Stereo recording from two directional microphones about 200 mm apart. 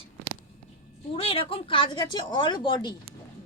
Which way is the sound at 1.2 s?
30° left (ahead or behind).